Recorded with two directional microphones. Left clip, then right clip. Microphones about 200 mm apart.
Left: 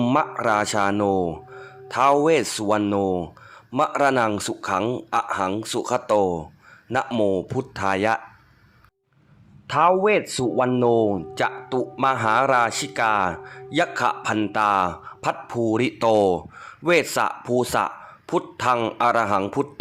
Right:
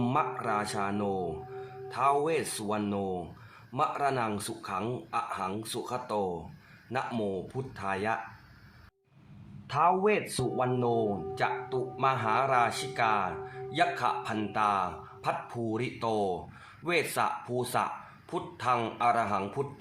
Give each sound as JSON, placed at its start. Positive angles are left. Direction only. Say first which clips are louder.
{"t": 0.0, "sound": "speech", "louder": "left 9 dB", "side_deg": 55}
{"t": 6.9, "sound": "speech", "louder": "left 11 dB", "side_deg": 45}
{"t": 9.6, "sound": "speech", "louder": "left 8 dB", "side_deg": 50}